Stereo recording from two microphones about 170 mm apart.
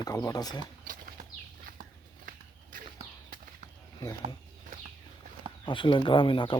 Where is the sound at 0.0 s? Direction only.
20° left (ahead or behind).